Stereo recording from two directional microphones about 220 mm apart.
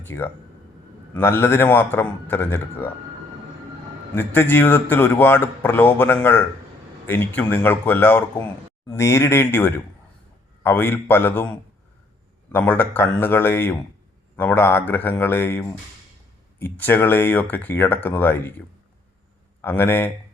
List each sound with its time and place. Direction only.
0.0 s a man's voice: 10° left (ahead or behind)
4.1 s a man's voice: 10° left (ahead or behind)
19.6 s a man's voice: 10° left (ahead or behind)